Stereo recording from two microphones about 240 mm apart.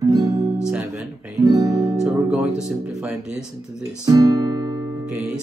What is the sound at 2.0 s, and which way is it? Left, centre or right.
Speech, centre.